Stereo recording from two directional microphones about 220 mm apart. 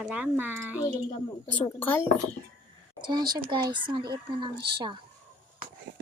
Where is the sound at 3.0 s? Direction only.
20° right (ahead or behind).